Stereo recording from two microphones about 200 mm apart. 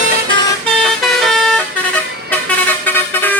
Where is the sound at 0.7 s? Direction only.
Centre (ahead or behind).